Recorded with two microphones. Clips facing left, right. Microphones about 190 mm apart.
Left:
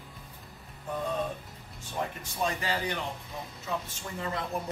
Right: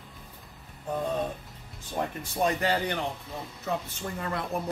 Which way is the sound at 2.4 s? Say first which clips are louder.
Right 5 dB; 60° right (ahead or behind).